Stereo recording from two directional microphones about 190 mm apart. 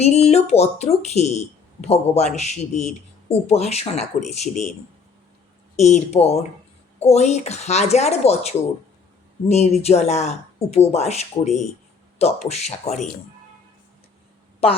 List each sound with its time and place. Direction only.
0.0 s speech: 35° left (ahead or behind)
5.7 s speech: 35° left (ahead or behind)
9.5 s speech: 35° left (ahead or behind)